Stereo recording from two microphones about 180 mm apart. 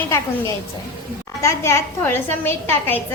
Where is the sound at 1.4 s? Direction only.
15° left (ahead or behind).